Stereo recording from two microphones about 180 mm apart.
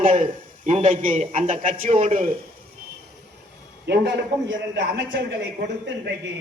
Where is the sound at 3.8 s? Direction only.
70° right (ahead or behind).